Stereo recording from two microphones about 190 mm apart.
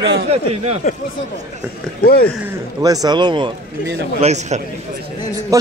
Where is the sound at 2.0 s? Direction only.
55° left (ahead or behind).